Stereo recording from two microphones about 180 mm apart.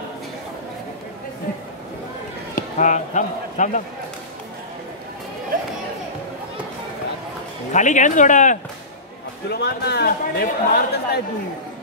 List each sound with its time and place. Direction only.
2.5 s a man's voice: 45° left (ahead or behind)
7.7 s speech: 45° left (ahead or behind)
9.5 s a man's voice: 65° left (ahead or behind)